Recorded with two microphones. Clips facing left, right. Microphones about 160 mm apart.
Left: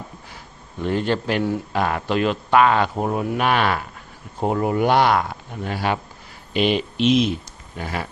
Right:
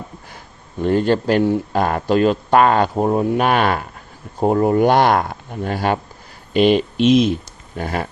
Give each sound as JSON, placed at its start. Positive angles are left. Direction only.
{"t": 0.8, "sound": "speech", "side_deg": -45}